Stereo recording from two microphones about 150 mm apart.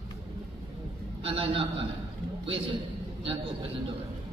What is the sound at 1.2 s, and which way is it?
Speech, 35° right (ahead or behind).